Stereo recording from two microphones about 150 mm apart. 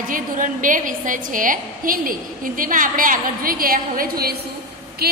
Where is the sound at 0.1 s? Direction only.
65° right (ahead or behind).